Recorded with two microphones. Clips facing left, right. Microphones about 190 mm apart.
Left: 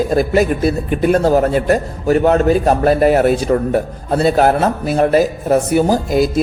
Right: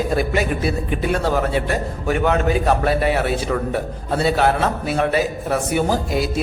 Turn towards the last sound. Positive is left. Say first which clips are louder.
# left 6 dB
turn(degrees=40)  # may be behind; listen again after turning